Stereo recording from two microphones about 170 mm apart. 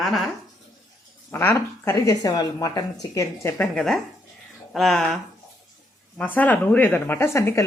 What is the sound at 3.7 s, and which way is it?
Speech, centre (ahead or behind).